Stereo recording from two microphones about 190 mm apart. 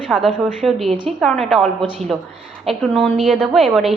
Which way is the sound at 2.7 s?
Centre (ahead or behind).